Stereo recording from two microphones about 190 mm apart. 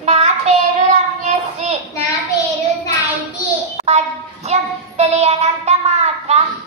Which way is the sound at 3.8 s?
35° right (ahead or behind).